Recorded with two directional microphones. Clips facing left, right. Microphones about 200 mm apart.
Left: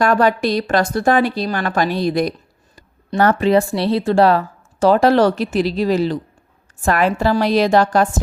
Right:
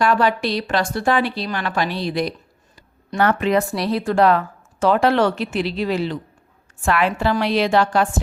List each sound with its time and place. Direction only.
0.0 s speech: 45° left (ahead or behind)